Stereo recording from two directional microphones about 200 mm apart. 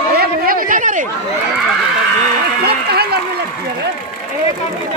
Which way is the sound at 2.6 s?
55° right (ahead or behind).